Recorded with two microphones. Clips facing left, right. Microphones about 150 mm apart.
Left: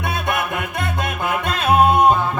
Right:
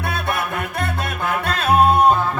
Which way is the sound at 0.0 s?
20° left (ahead or behind).